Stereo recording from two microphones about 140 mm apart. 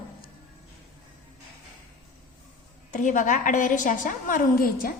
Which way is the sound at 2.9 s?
65° left (ahead or behind).